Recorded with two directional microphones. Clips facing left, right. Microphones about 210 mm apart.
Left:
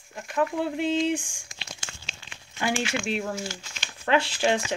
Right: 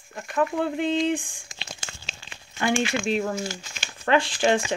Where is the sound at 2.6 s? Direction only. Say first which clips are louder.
Right 3 dB; 5° left (ahead or behind).